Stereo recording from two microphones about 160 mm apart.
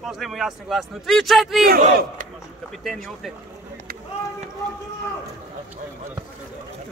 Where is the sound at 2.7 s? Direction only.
Centre (ahead or behind).